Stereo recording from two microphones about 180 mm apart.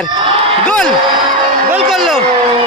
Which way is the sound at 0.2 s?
30° right (ahead or behind).